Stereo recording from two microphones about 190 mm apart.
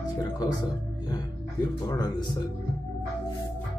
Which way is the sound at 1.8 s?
20° left (ahead or behind).